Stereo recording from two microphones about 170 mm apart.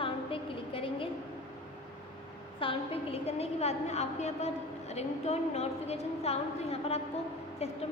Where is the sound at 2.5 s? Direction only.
35° left (ahead or behind).